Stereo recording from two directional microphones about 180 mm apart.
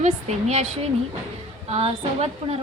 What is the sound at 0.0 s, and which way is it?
A woman's voice, 35° right (ahead or behind).